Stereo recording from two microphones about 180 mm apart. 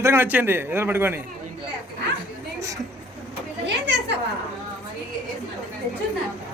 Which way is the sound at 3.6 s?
75° right (ahead or behind).